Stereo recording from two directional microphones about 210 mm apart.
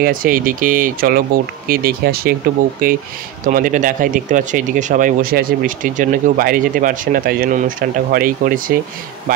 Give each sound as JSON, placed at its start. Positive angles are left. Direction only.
{"t": 0.0, "sound": "speech", "side_deg": -40}